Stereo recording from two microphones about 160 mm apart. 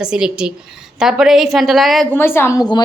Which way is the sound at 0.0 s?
5° right (ahead or behind).